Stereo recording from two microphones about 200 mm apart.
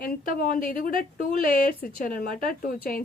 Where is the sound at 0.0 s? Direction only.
50° left (ahead or behind).